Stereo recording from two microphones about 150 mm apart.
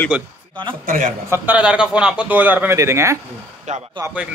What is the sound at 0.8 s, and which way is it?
Speech, 60° right (ahead or behind).